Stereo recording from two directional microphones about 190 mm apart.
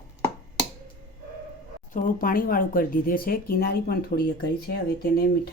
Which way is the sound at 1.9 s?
45° left (ahead or behind).